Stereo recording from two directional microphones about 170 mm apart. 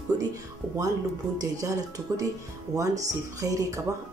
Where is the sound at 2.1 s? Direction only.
15° right (ahead or behind).